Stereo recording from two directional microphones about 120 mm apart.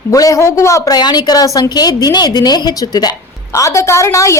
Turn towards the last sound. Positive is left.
turn(degrees=25)  # may be behind; listen again after turning